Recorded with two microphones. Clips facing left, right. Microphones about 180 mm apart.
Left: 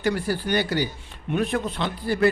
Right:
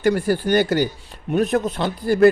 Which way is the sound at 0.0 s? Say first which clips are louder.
Right 6 dB; 50° right (ahead or behind).